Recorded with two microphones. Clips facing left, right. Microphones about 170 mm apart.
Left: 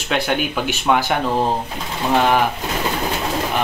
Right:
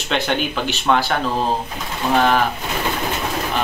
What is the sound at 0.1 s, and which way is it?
Speech, 5° left (ahead or behind).